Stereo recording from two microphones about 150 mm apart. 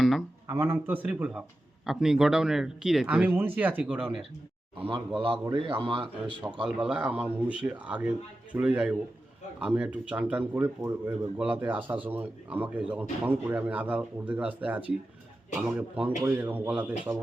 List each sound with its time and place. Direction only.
0.0 s a sound: centre (ahead or behind)
0.4 s a man's voice: 15° right (ahead or behind)
4.0 s speech: centre (ahead or behind)
5.2 s speech: 35° right (ahead or behind)
6.7 s a man's voice: 10° right (ahead or behind)